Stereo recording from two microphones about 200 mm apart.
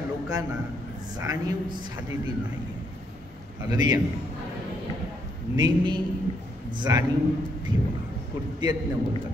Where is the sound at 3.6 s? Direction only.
20° right (ahead or behind).